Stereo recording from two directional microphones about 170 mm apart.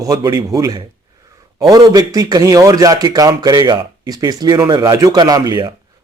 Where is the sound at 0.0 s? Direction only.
20° right (ahead or behind).